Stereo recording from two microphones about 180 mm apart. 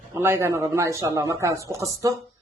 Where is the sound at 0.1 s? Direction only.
15° right (ahead or behind).